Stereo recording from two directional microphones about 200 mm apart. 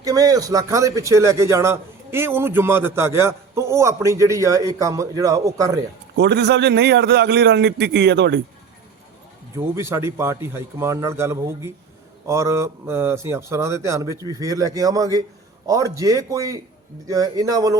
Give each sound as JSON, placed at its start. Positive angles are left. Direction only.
{"t": 0.0, "sound": "a man's voice", "side_deg": -15}
{"t": 6.1, "sound": "a man's voice", "side_deg": -60}
{"t": 9.6, "sound": "a man's voice", "side_deg": -15}